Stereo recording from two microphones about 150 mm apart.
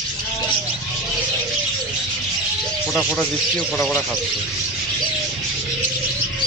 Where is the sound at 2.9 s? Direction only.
Centre (ahead or behind).